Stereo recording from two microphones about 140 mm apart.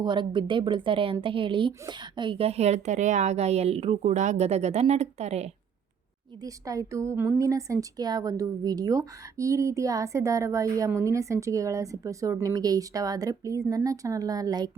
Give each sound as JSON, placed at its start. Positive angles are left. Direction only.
{"t": 0.0, "sound": "a woman's voice", "side_deg": -35}
{"t": 6.4, "sound": "a woman's voice", "side_deg": -25}